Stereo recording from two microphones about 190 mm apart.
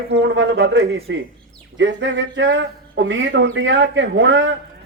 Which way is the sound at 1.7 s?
70° right (ahead or behind).